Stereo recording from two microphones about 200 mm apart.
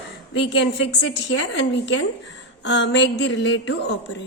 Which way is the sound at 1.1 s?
65° left (ahead or behind).